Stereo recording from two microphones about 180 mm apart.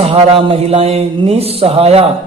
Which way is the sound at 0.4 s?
35° right (ahead or behind).